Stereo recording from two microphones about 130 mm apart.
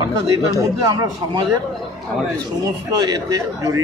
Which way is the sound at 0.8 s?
30° right (ahead or behind).